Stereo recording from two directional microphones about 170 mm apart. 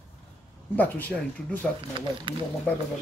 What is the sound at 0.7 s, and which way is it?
Speech, 10° left (ahead or behind).